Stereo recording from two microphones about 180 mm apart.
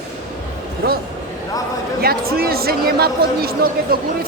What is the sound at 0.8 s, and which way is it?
Speech, 60° right (ahead or behind).